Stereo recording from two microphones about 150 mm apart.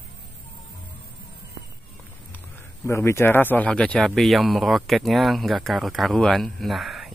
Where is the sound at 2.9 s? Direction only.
15° left (ahead or behind).